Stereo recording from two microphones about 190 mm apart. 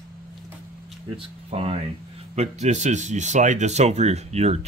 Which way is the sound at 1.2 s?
30° right (ahead or behind).